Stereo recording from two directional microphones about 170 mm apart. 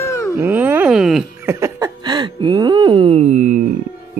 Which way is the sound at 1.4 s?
15° right (ahead or behind).